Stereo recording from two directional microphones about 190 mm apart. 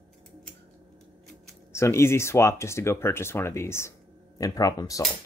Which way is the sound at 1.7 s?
15° left (ahead or behind).